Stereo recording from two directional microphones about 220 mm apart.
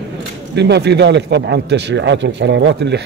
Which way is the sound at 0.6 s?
50° right (ahead or behind).